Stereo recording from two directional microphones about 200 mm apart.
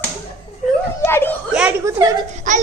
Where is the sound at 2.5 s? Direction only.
40° right (ahead or behind).